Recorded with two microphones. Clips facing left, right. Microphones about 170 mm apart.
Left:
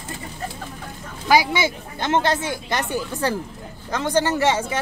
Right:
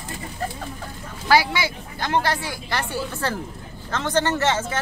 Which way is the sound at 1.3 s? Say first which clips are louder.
Left 1 dB; 20° left (ahead or behind).